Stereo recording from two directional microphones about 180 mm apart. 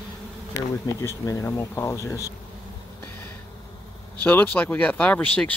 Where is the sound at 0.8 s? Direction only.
15° left (ahead or behind).